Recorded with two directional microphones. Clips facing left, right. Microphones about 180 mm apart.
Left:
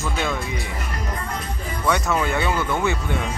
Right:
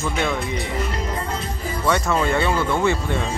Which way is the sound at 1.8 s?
Centre (ahead or behind).